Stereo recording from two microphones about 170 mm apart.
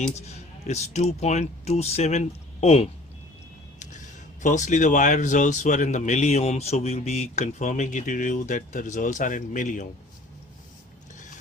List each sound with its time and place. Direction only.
0.2 s speech: 40° left (ahead or behind)
4.4 s a man's voice: 45° left (ahead or behind)